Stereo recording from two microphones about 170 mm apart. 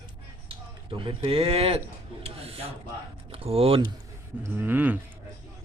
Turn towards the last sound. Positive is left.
turn(degrees=-10)  # may be behind; listen again after turning